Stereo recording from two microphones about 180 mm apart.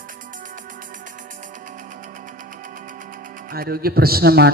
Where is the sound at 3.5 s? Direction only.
55° right (ahead or behind).